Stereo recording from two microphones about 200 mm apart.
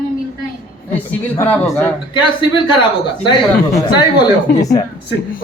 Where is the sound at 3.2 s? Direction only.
25° left (ahead or behind).